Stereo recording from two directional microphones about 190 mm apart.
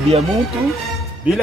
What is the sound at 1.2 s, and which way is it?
Speech, 10° right (ahead or behind).